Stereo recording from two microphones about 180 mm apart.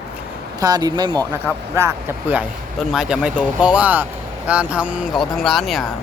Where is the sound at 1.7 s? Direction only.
10° right (ahead or behind).